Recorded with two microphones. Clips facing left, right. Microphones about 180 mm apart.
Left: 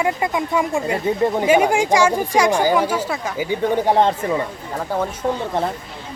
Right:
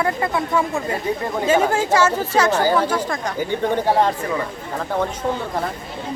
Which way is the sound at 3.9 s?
25° left (ahead or behind).